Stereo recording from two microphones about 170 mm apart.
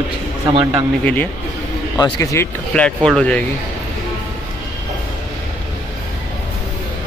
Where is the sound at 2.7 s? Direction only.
5° left (ahead or behind).